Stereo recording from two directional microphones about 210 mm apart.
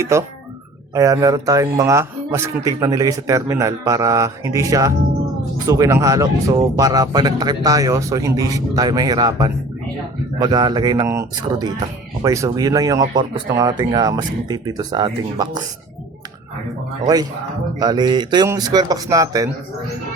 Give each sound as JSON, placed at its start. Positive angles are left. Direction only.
{"t": 0.0, "sound": "speech", "side_deg": -15}
{"t": 17.7, "sound": "speech", "side_deg": -20}